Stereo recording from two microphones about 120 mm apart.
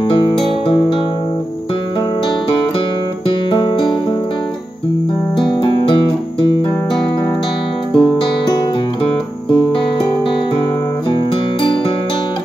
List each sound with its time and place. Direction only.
0.0 s music: 45° left (ahead or behind)
3.4 s music: 40° left (ahead or behind)
5.3 s music: 40° left (ahead or behind)
7.9 s music: 45° left (ahead or behind)